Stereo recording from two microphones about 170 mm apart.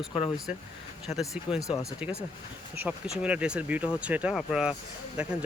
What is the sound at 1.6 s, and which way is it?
Speech, 20° left (ahead or behind).